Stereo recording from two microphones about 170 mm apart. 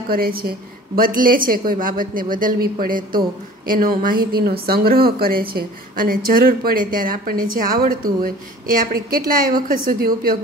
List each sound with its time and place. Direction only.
0.1 s a woman's voice: 60° right (ahead or behind)